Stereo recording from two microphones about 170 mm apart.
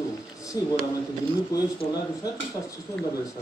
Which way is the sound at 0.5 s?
20° left (ahead or behind).